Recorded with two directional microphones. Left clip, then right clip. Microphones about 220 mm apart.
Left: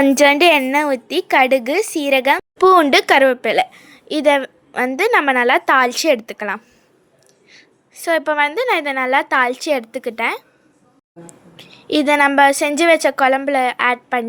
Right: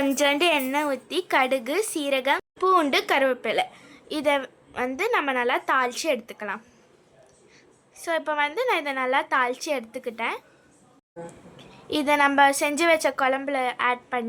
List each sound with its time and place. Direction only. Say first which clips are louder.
0.0 s a woman's voice: left 10 dB; 25° left (ahead or behind)